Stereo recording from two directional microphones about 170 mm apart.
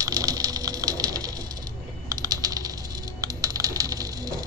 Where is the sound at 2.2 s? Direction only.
20° right (ahead or behind).